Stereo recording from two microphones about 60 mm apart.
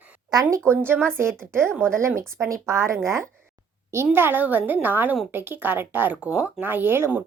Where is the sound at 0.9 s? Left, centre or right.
Right.